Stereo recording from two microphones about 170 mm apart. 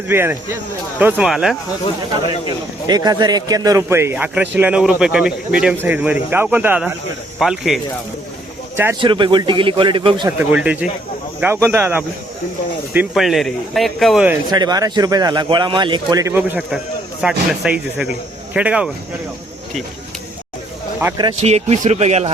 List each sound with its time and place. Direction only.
0.1 s a man's voice: 10° right (ahead or behind)
2.8 s a man's voice: 25° right (ahead or behind); by 7.8 s centre (ahead or behind)
8.7 s speech: 15° right (ahead or behind)
9.0 s a man's voice: 30° right (ahead or behind)
10.2 s a man's voice: 10° right (ahead or behind)
14.5 s a man's voice: 25° right (ahead or behind); by 18.9 s 5° right (ahead or behind)
21.4 s speech: 40° right (ahead or behind)